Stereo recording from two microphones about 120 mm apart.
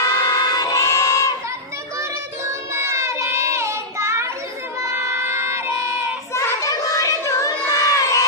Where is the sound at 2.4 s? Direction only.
25° right (ahead or behind).